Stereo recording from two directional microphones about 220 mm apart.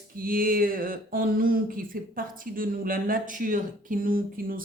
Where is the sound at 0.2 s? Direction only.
40° right (ahead or behind).